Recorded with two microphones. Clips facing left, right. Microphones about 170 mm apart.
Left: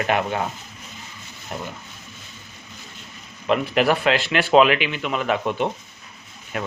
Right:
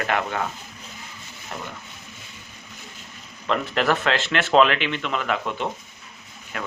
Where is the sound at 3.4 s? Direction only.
15° left (ahead or behind).